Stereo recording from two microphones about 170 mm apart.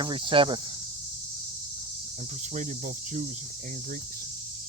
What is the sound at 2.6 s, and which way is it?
Cricket, 45° right (ahead or behind).